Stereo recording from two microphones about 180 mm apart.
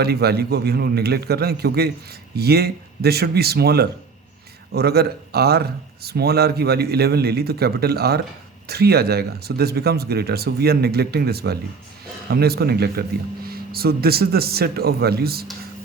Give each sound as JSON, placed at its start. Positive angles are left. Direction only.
{"t": 0.0, "sound": "speech", "side_deg": -60}